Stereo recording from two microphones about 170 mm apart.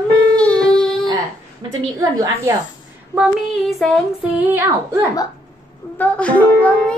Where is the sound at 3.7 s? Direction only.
Centre (ahead or behind).